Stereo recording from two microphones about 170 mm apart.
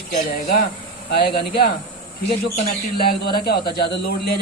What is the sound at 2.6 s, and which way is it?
A man's voice, 65° left (ahead or behind).